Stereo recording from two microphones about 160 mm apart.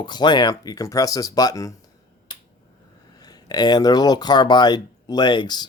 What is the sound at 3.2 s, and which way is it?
Speech, 25° left (ahead or behind).